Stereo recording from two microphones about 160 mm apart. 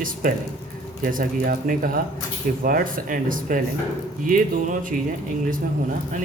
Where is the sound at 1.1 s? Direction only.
60° right (ahead or behind).